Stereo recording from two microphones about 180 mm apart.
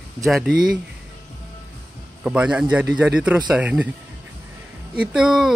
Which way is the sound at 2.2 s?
5° right (ahead or behind).